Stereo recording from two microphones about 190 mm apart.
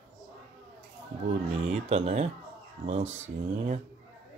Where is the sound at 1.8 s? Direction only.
35° right (ahead or behind).